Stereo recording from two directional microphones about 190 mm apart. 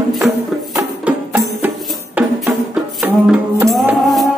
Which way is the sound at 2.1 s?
Centre (ahead or behind).